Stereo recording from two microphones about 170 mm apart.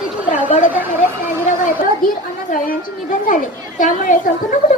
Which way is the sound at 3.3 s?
50° left (ahead or behind).